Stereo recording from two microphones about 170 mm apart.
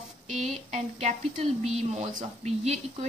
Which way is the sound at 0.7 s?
40° right (ahead or behind).